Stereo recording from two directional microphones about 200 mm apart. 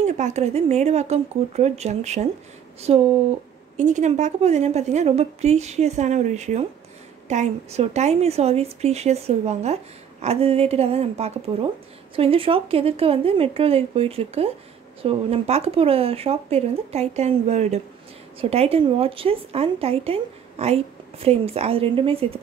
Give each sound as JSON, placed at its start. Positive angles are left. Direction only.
{"t": 0.0, "sound": "a woman's voice", "side_deg": -35}